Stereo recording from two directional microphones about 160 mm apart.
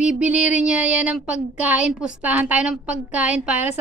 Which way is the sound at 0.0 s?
5° right (ahead or behind).